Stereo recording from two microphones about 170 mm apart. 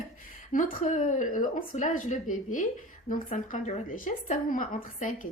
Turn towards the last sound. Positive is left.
turn(degrees=50)  # may be behind; listen again after turning